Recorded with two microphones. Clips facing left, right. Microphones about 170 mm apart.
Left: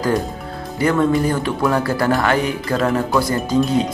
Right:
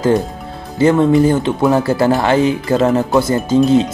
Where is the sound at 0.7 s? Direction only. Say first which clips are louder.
Right 6 dB; 25° right (ahead or behind).